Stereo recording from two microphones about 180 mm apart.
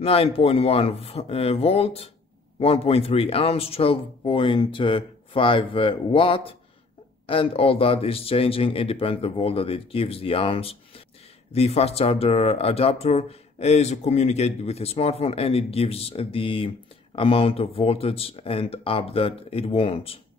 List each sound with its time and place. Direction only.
0.0 s speech: 35° left (ahead or behind)